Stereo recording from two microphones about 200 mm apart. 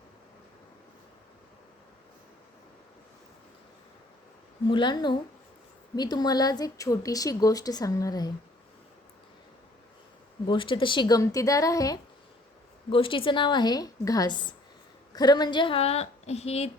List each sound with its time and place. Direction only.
4.7 s speech: 20° left (ahead or behind)
10.4 s a woman's voice: 25° left (ahead or behind)